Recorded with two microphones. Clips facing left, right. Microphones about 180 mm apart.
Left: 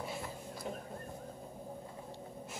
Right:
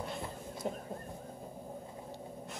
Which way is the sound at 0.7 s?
40° right (ahead or behind).